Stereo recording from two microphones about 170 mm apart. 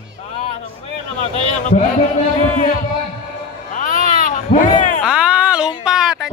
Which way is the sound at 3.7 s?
50° left (ahead or behind).